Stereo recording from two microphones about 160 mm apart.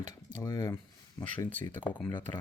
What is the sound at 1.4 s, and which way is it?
Speech, 10° left (ahead or behind).